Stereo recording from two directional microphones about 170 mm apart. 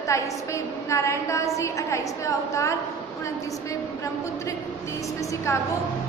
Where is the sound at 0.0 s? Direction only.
20° left (ahead or behind).